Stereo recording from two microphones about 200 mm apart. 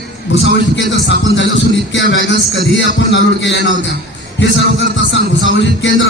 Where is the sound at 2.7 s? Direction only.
65° left (ahead or behind).